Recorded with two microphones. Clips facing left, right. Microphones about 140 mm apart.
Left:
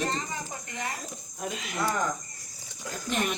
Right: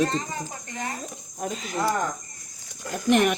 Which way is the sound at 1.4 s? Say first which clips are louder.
Right 4 dB; 35° right (ahead or behind).